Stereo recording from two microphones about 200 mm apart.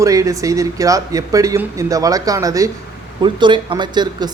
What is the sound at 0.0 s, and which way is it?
Speech, 15° right (ahead or behind).